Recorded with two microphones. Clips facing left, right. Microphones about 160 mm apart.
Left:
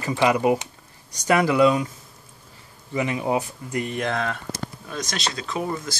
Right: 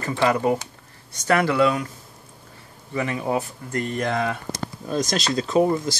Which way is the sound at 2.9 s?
15° left (ahead or behind).